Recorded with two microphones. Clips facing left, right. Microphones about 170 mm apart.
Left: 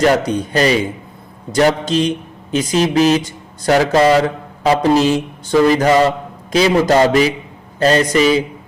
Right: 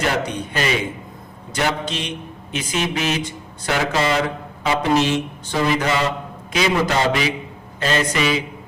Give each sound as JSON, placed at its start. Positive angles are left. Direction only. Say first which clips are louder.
{"t": 0.0, "sound": "speech", "louder": "left 8 dB", "side_deg": 35}